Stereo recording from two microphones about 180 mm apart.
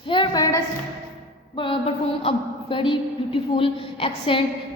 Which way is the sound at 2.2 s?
30° left (ahead or behind).